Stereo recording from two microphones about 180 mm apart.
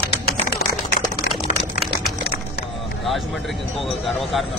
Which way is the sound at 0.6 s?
60° left (ahead or behind).